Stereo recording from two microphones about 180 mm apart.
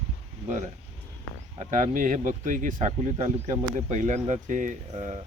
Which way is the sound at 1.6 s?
45° right (ahead or behind).